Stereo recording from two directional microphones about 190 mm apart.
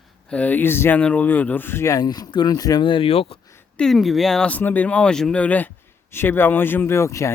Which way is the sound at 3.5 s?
5° left (ahead or behind).